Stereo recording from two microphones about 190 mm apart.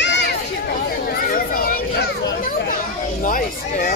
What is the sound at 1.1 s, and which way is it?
Children playing, 50° left (ahead or behind).